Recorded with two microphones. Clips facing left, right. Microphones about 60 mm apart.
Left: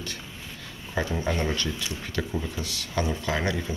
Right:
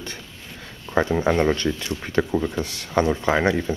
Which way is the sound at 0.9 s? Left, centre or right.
Right.